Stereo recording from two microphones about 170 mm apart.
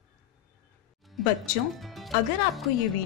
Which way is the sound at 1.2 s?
Centre (ahead or behind).